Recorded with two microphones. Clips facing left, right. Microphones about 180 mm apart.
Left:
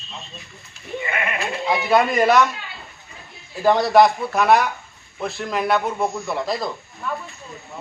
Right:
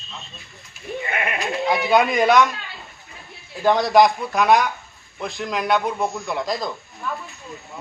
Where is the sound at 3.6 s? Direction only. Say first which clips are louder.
Left 1 dB; 5° left (ahead or behind).